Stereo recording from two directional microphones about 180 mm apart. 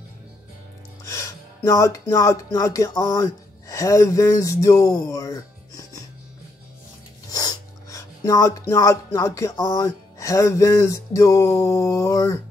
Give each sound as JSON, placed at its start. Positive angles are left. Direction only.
{"t": 1.0, "sound": "speech", "side_deg": 15}
{"t": 7.2, "sound": "speech", "side_deg": 20}